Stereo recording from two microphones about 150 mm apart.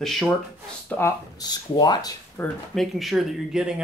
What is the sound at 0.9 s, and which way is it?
Speech, 15° left (ahead or behind).